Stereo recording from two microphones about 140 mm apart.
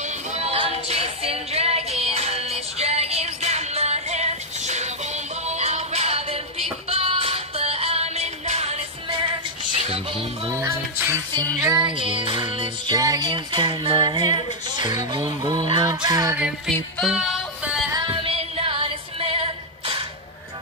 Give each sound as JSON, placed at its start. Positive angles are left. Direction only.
{"t": 0.0, "sound": "music", "side_deg": -55}
{"t": 9.8, "sound": "music", "side_deg": -45}
{"t": 10.6, "sound": "music", "side_deg": -20}
{"t": 11.6, "sound": "music", "side_deg": -35}
{"t": 16.3, "sound": "music", "side_deg": -5}
{"t": 17.9, "sound": "female singing", "side_deg": -35}